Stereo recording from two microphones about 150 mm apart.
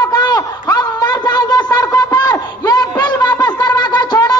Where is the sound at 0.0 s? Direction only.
30° left (ahead or behind).